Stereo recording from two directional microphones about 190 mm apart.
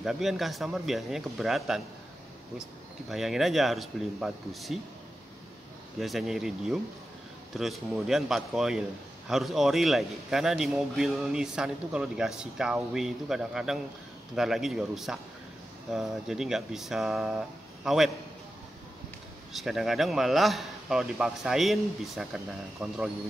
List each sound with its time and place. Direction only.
0.0 s a man's voice: centre (ahead or behind)
3.1 s a man's voice: centre (ahead or behind)
5.9 s a man's voice: centre (ahead or behind)
19.5 s a man's voice: centre (ahead or behind)